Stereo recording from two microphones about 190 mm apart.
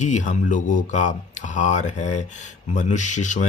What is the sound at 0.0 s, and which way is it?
Speech, 40° left (ahead or behind).